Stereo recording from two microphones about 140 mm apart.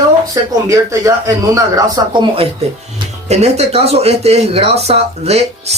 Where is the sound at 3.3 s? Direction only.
50° right (ahead or behind).